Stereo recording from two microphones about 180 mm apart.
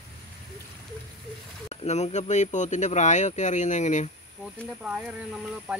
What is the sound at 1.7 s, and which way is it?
Speech, 35° left (ahead or behind).